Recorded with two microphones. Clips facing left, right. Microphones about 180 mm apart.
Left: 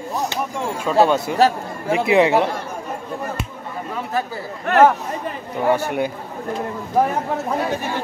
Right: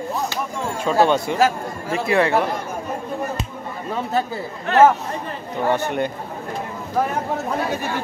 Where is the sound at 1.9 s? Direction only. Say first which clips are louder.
Left 3 dB; 15° left (ahead or behind).